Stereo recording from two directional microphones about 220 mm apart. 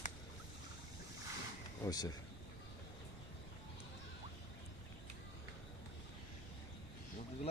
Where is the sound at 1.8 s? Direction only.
15° left (ahead or behind).